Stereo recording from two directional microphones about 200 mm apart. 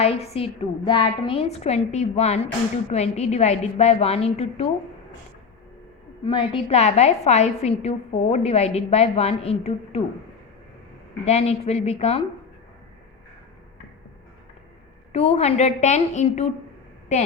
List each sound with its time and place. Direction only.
0.0 s a woman's voice: 30° left (ahead or behind)
6.2 s a woman's voice: 25° left (ahead or behind)
11.3 s a woman's voice: 30° left (ahead or behind)
15.1 s a woman's voice: 30° left (ahead or behind)